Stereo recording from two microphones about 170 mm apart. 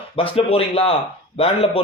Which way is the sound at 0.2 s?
35° left (ahead or behind).